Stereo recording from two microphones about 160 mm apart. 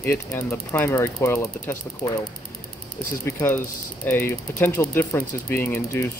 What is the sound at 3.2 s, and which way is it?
Mechanisms, 15° left (ahead or behind).